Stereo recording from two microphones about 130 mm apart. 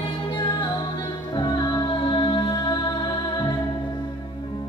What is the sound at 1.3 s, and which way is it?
Music, 30° left (ahead or behind).